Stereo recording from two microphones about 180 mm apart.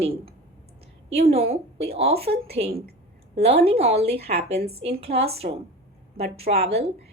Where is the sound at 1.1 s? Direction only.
35° right (ahead or behind).